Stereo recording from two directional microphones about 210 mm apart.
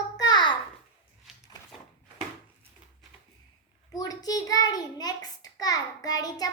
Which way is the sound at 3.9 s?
15° left (ahead or behind).